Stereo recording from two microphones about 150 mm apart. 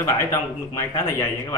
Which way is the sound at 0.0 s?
20° left (ahead or behind).